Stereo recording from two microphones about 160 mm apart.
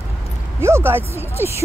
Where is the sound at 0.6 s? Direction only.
15° right (ahead or behind).